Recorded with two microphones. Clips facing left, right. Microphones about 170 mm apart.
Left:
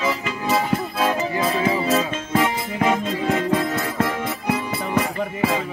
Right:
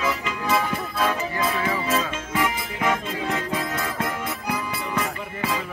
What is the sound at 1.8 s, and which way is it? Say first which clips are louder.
Music: left 4 dB; 40° left (ahead or behind).